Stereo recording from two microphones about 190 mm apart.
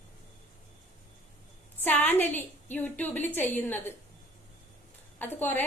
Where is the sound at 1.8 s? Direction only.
10° left (ahead or behind).